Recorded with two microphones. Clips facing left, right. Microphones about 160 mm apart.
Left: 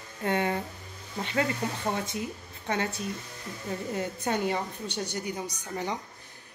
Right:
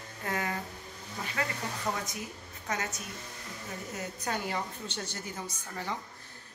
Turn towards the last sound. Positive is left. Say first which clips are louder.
# left 5 dB
turn(degrees=20)  # may be behind; listen again after turning